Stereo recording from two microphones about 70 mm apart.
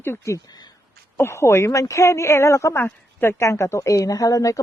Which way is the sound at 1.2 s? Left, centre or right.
Left.